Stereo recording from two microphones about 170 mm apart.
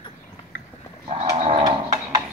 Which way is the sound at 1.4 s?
30° right (ahead or behind).